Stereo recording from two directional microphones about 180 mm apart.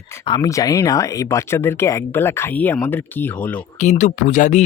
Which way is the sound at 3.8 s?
40° left (ahead or behind).